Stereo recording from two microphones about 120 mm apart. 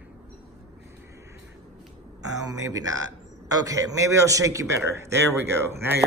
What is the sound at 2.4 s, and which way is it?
A man's voice, 30° right (ahead or behind).